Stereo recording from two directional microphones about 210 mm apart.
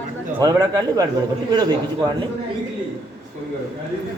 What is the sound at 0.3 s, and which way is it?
Speech, 20° right (ahead or behind).